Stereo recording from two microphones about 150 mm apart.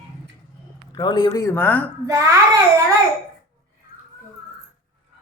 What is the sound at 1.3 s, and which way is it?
Speech, 20° left (ahead or behind).